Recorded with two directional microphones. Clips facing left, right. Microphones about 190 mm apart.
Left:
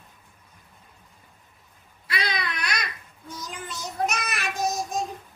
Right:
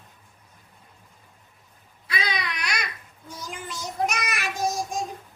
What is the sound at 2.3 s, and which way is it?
Babbling, 10° right (ahead or behind).